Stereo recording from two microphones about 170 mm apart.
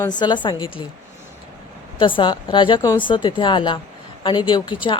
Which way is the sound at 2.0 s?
30° left (ahead or behind).